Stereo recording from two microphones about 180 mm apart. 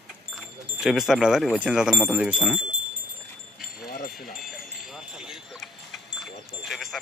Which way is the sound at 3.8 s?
50° left (ahead or behind).